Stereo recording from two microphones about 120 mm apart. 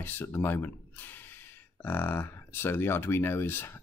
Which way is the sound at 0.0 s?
20° left (ahead or behind).